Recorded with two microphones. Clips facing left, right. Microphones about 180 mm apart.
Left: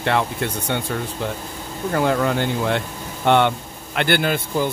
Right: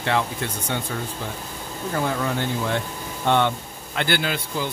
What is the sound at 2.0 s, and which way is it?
Speech, 70° left (ahead or behind).